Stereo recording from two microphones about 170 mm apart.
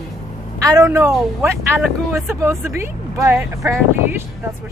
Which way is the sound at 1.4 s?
15° right (ahead or behind).